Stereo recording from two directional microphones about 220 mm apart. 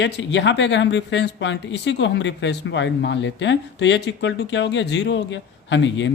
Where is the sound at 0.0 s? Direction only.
55° left (ahead or behind).